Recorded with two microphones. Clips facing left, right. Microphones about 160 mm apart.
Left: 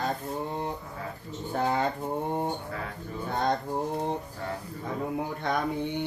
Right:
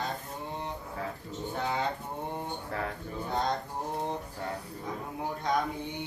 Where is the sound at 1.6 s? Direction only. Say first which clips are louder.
Left 6 dB; 50° left (ahead or behind).